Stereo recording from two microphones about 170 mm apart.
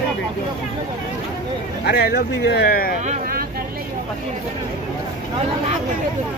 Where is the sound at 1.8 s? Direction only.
65° left (ahead or behind).